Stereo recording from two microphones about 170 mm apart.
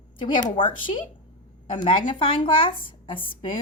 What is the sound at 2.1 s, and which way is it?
A woman's voice, 30° left (ahead or behind).